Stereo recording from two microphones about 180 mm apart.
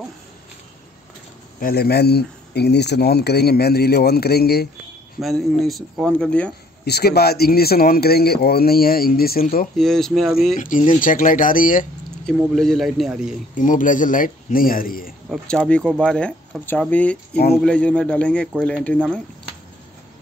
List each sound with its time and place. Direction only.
1.6 s speech: 60° left (ahead or behind)
5.2 s speech: centre (ahead or behind)
6.8 s speech: 60° left (ahead or behind)
9.8 s speech: centre (ahead or behind)
10.5 s a man's voice: 45° left (ahead or behind)
12.5 s speech: centre (ahead or behind)
13.6 s a man's voice: 45° left (ahead or behind)
15.2 s speech: centre (ahead or behind)